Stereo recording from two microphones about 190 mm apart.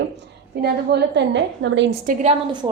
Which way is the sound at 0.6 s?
60° right (ahead or behind).